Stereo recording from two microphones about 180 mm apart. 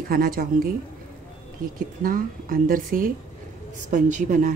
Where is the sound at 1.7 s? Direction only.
50° right (ahead or behind).